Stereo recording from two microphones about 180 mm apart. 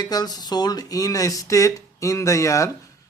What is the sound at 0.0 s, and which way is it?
Speech, 20° left (ahead or behind).